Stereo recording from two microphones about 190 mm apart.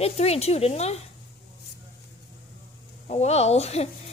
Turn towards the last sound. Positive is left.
turn(degrees=35)  # may be behind; listen again after turning